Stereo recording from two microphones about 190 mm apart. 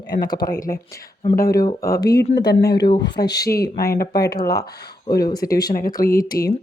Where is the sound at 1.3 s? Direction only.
50° left (ahead or behind).